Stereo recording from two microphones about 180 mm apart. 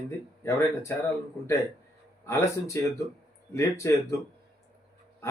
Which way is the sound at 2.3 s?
15° left (ahead or behind).